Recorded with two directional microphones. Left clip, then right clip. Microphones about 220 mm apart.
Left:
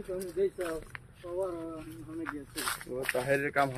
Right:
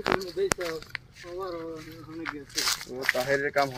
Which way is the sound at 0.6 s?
45° right (ahead or behind).